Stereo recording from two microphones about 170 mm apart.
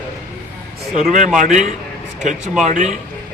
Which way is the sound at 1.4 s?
45° right (ahead or behind).